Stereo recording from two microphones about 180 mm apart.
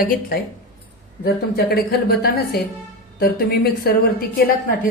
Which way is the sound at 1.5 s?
60° left (ahead or behind).